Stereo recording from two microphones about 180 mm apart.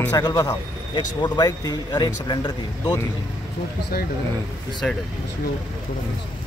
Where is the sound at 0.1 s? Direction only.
20° left (ahead or behind).